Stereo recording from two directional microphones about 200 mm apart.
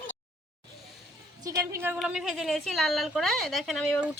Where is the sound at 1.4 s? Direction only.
15° right (ahead or behind).